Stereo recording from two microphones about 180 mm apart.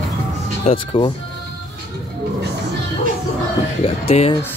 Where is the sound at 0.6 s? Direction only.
30° left (ahead or behind).